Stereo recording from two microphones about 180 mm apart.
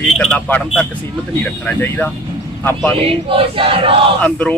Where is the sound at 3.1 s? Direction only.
30° right (ahead or behind).